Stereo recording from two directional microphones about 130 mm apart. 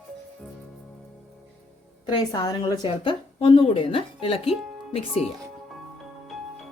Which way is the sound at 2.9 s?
45° left (ahead or behind).